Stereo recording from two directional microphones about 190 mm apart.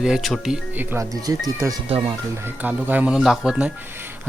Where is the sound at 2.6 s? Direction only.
10° right (ahead or behind).